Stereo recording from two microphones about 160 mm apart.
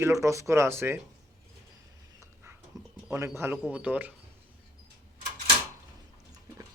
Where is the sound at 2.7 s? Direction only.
25° right (ahead or behind).